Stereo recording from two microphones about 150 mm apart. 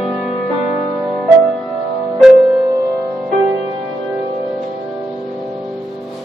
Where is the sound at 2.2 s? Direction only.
Centre (ahead or behind).